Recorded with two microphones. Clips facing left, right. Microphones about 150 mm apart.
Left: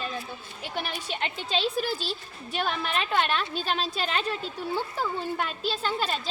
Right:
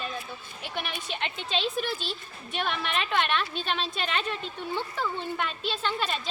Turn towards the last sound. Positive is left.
turn(degrees=35)  # may be behind; listen again after turning